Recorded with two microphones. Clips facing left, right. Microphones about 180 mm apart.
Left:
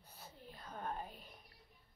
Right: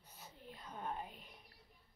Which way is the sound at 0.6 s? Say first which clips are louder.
Left 1 dB; 15° right (ahead or behind).